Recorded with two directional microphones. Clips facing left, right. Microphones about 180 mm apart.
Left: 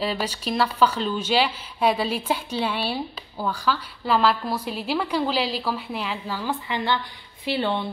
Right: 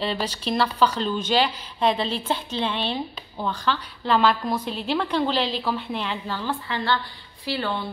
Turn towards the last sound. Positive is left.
turn(degrees=20)  # may be behind; listen again after turning